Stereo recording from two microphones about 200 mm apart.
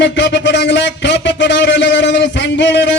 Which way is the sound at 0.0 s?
60° left (ahead or behind).